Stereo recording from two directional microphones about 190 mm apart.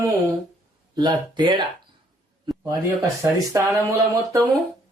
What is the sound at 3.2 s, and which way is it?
Speech, 15° right (ahead or behind).